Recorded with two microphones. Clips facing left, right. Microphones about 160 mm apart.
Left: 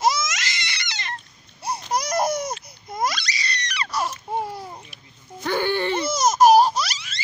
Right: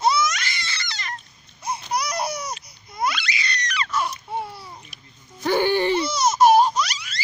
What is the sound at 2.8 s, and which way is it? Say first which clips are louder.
Crying: even; 45° left (ahead or behind).